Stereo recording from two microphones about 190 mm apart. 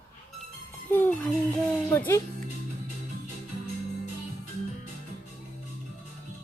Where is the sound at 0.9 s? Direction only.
10° left (ahead or behind).